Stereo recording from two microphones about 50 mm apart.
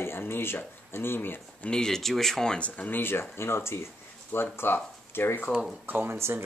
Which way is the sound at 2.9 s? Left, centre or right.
Left.